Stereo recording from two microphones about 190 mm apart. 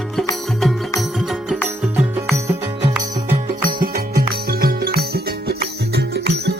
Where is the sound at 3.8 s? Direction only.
50° right (ahead or behind).